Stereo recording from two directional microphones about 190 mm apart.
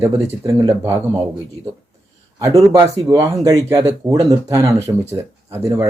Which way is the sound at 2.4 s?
15° right (ahead or behind).